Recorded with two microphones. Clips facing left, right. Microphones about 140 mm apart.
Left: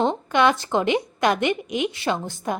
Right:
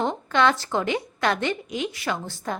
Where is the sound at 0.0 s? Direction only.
15° left (ahead or behind).